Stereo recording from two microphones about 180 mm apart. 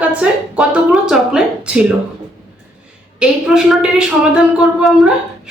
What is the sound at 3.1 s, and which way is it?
A woman's voice, centre (ahead or behind).